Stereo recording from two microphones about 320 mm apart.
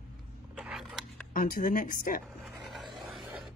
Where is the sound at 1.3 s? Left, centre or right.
Left.